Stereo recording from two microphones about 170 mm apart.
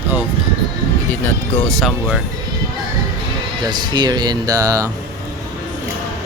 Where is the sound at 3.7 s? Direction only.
25° right (ahead or behind).